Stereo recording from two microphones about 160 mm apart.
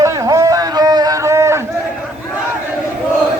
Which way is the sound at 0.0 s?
20° right (ahead or behind).